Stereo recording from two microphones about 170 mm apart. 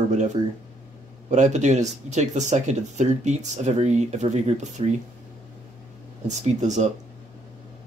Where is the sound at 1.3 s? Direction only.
45° right (ahead or behind).